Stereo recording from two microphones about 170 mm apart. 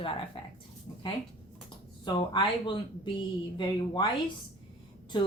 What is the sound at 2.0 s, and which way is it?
Speech, 30° left (ahead or behind).